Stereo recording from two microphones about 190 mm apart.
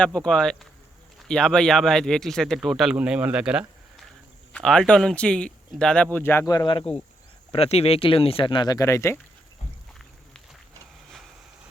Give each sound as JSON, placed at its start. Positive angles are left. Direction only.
{"t": 0.0, "sound": "speech", "side_deg": 5}